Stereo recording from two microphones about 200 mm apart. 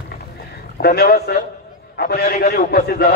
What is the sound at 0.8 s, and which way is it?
A man's voice, 50° left (ahead or behind).